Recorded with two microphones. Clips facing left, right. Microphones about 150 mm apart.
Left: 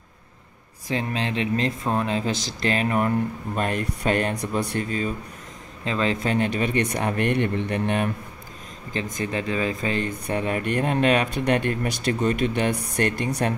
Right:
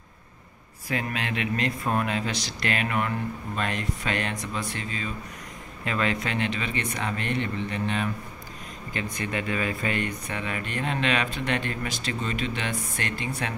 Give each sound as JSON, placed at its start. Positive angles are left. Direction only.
{"t": 0.8, "sound": "speech", "side_deg": 30}
{"t": 4.4, "sound": "speech", "side_deg": 65}
{"t": 4.8, "sound": "speech", "side_deg": 45}
{"t": 5.9, "sound": "speech", "side_deg": 30}
{"t": 6.2, "sound": "speech", "side_deg": 45}
{"t": 9.0, "sound": "speech", "side_deg": 45}
{"t": 9.3, "sound": "speech", "side_deg": 30}